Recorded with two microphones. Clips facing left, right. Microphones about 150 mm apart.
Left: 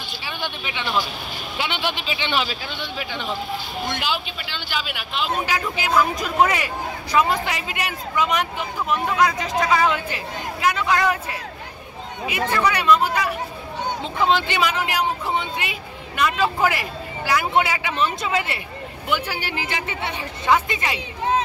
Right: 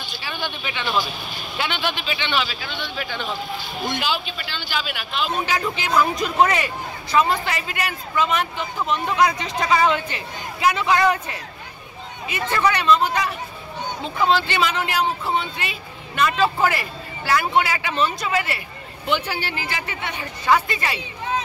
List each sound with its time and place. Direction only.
0.3 s speech: 15° left (ahead or behind)
1.7 s a woman's voice: 25° left (ahead or behind)
2.2 s speech: 40° left (ahead or behind)
3.0 s speech: 20° left (ahead or behind); by 11.3 s centre (ahead or behind)
12.6 s speech: 10° left (ahead or behind)
14.0 s speech: 20° left (ahead or behind)
19.0 s a woman's voice: 10° left (ahead or behind)